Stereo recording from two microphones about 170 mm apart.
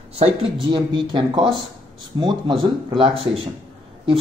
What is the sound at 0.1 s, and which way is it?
A man's voice, 30° right (ahead or behind).